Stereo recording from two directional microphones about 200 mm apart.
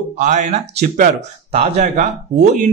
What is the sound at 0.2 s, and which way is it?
Speech, 35° right (ahead or behind).